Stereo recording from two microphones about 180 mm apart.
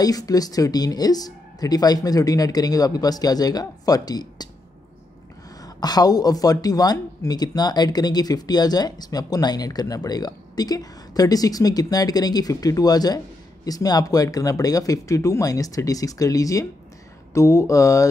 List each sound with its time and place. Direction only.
0.0 s speech: 20° left (ahead or behind)
5.6 s speech: 20° left (ahead or behind)